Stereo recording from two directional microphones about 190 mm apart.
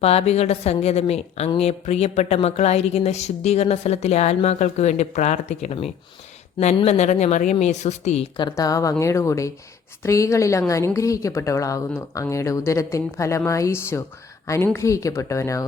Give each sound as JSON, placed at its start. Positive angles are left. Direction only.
{"t": 0.0, "sound": "a woman's voice", "side_deg": 35}